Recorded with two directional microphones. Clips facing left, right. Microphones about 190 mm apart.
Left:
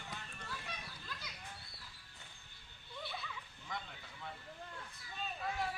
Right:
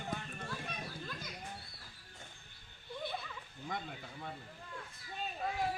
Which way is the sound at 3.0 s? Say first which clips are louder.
Right 4 dB; 50° right (ahead or behind).